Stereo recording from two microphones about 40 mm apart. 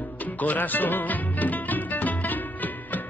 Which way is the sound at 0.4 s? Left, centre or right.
Left.